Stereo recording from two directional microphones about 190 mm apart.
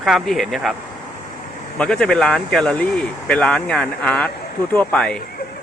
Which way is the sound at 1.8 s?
5° left (ahead or behind).